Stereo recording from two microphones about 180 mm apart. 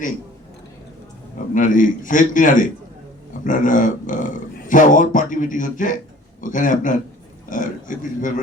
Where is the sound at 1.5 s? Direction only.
45° left (ahead or behind).